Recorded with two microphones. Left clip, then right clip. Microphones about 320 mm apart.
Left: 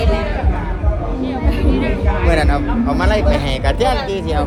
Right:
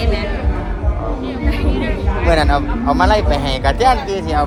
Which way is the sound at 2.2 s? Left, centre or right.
Centre.